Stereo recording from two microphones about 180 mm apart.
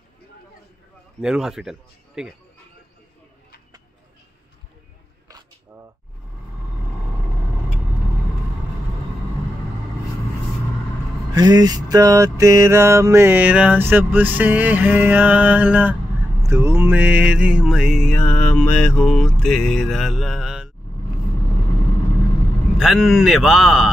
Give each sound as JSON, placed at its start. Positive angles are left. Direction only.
{"t": 1.2, "sound": "mantra", "side_deg": -5}
{"t": 11.3, "sound": "mantra", "side_deg": -20}
{"t": 22.8, "sound": "mantra", "side_deg": -5}